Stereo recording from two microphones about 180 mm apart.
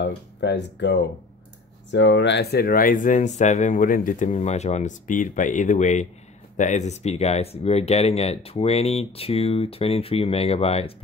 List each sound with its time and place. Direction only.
0.0 s speech: 75° left (ahead or behind)
1.9 s speech: 85° left; by 10.9 s 35° left (ahead or behind)